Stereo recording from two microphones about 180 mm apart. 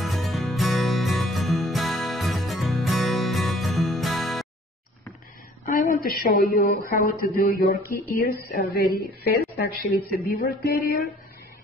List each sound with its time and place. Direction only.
0.0 s music: centre (ahead or behind)
5.7 s speech: 55° left (ahead or behind)